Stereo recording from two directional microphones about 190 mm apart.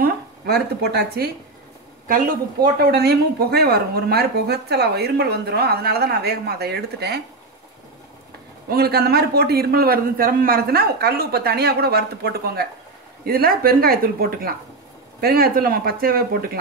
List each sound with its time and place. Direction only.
0.0 s speech: 55° right (ahead or behind)
8.6 s speech: 55° right (ahead or behind)